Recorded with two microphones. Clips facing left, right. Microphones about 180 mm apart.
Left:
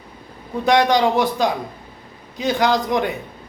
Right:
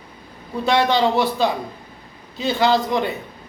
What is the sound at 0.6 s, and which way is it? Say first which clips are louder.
Speech: left 2 dB; 15° left (ahead or behind).